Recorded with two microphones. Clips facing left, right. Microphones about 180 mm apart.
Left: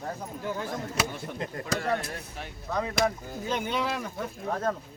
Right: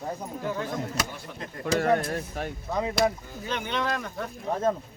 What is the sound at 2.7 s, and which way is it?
Speech, 20° right (ahead or behind).